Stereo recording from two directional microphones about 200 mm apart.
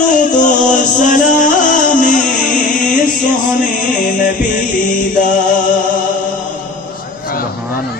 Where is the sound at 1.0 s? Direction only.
40° left (ahead or behind).